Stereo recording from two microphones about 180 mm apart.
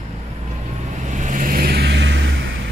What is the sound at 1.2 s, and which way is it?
Vehicle, 45° right (ahead or behind).